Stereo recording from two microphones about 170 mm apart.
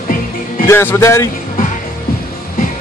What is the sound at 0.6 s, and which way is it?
Speech, 15° left (ahead or behind).